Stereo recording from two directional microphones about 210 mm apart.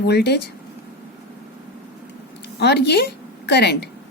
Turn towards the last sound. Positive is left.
turn(degrees=55)  # may be behind; listen again after turning